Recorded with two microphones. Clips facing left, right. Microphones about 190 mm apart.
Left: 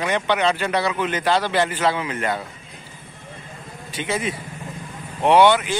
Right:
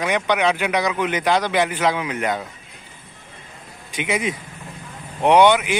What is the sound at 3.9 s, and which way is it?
Speech, 15° right (ahead or behind).